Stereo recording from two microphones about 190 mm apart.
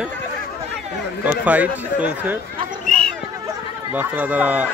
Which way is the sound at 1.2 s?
10° right (ahead or behind).